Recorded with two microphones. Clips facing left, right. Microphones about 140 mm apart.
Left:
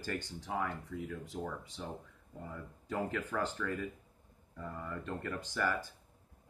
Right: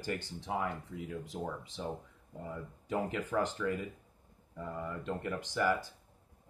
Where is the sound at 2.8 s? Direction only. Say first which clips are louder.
Right 2 dB; 15° right (ahead or behind).